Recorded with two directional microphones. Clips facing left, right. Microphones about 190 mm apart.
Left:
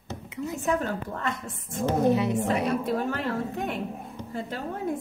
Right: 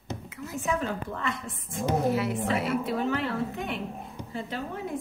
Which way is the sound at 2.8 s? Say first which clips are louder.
Even; 45° left (ahead or behind).